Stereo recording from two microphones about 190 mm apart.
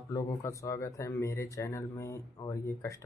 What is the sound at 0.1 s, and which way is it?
Speech, 15° left (ahead or behind).